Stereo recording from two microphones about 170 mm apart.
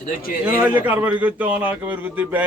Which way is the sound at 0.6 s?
10° right (ahead or behind).